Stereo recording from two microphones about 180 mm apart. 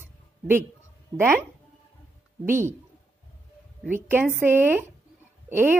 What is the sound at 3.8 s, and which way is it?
A woman's voice, 10° right (ahead or behind).